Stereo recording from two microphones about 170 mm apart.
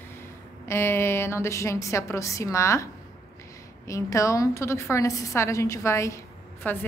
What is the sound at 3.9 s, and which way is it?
A woman's voice, 20° left (ahead or behind).